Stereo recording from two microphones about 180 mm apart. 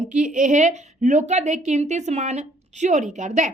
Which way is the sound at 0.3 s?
45° right (ahead or behind).